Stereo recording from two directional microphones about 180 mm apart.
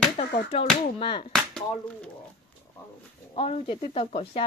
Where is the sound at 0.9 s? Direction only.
30° left (ahead or behind).